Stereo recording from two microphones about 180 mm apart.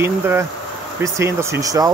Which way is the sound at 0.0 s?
15° right (ahead or behind).